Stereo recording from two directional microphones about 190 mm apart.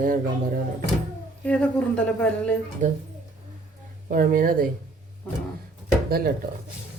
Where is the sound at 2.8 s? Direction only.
40° right (ahead or behind).